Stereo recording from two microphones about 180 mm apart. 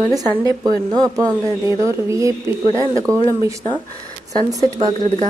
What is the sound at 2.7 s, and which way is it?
Speech, 20° left (ahead or behind).